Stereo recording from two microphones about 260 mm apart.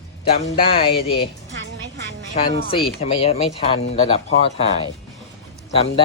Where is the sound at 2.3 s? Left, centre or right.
Left.